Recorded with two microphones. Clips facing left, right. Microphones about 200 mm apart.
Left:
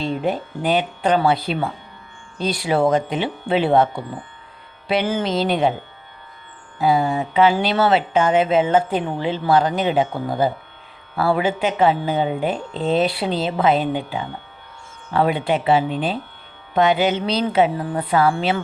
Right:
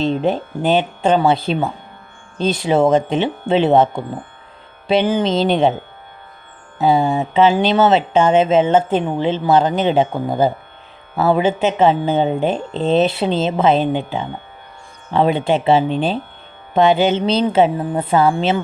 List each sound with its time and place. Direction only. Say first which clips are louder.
0.0 s speech: right 5 dB; 25° right (ahead or behind)
6.7 s speech: right 3 dB; 25° right (ahead or behind)